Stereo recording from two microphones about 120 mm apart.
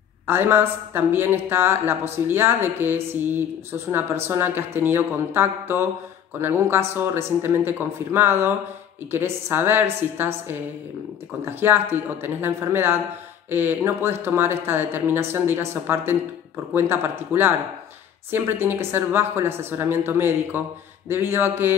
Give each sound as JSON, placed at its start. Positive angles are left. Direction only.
{"t": 0.3, "sound": "speech", "side_deg": -20}